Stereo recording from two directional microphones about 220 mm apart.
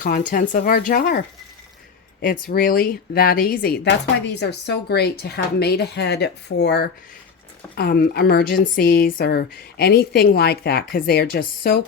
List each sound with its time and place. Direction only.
0.0 s speech: 40° left (ahead or behind)
2.2 s speech: 40° left (ahead or behind)